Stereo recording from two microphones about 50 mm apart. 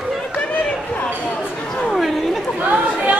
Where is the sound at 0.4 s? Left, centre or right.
Left.